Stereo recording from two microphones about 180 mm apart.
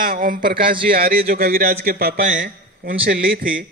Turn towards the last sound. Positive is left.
turn(degrees=-55)  # may be behind; listen again after turning